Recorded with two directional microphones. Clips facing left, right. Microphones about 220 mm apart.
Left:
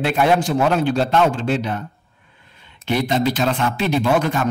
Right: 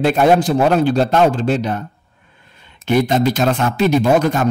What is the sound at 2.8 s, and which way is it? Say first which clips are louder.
A man's voice: right 4 dB; 45° right (ahead or behind).